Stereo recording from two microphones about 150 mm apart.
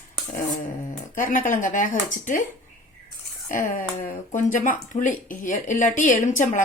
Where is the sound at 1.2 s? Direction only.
60° left (ahead or behind).